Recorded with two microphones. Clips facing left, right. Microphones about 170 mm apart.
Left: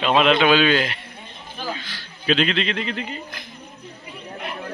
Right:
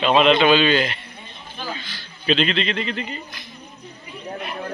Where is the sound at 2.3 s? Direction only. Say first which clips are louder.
Even; 5° left (ahead or behind).